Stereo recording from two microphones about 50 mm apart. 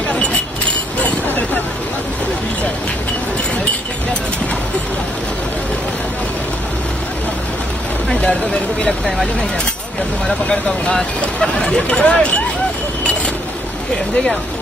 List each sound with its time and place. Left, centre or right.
0.1 s keys jangling: left
0.9 s vehicle: left
10.2 s speech: centre